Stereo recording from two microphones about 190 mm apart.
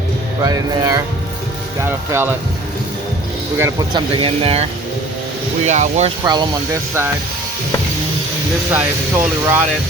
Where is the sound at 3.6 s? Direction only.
20° right (ahead or behind); by 6.0 s 40° right (ahead or behind).